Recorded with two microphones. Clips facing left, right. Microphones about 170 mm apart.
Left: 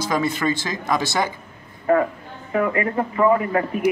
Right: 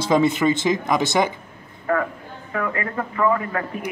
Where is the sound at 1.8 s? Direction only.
25° left (ahead or behind).